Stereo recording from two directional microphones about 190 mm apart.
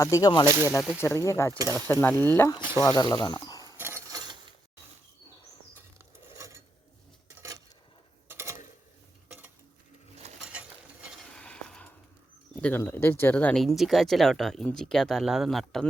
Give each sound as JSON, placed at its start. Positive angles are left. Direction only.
{"t": 0.0, "sound": "speech", "side_deg": 20}
{"t": 0.7, "sound": "speech", "side_deg": 0}
{"t": 1.0, "sound": "stir", "side_deg": 15}
{"t": 1.5, "sound": "mechanisms", "side_deg": -20}
{"t": 1.9, "sound": "stir", "side_deg": 10}
{"t": 2.6, "sound": "mechanisms", "side_deg": -10}
{"t": 2.8, "sound": "speech", "side_deg": 20}
{"t": 3.6, "sound": "mechanisms", "side_deg": -15}
{"t": 8.3, "sound": "a sound", "side_deg": -15}
{"t": 11.0, "sound": "a sound", "side_deg": 0}
{"t": 12.6, "sound": "speech", "side_deg": 10}